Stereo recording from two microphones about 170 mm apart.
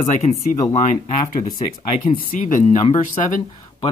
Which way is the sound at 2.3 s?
50° left (ahead or behind).